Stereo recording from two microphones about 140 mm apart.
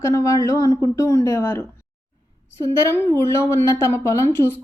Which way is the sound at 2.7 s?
20° left (ahead or behind).